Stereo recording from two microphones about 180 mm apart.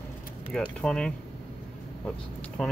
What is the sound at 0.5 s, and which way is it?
Speech, 5° left (ahead or behind).